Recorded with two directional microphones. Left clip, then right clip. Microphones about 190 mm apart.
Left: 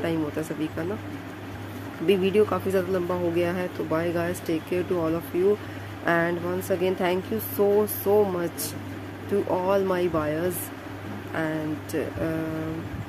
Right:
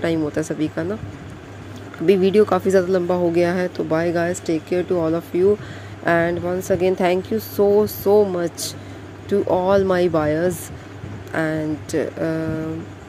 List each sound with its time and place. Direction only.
0.0 s speech: 30° right (ahead or behind)
2.0 s speech: 30° right (ahead or behind)
9.5 s speech: 25° right (ahead or behind)